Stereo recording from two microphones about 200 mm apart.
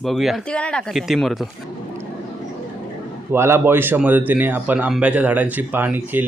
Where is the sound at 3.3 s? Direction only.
10° right (ahead or behind).